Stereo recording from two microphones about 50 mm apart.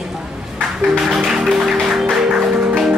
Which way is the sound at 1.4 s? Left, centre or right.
Centre.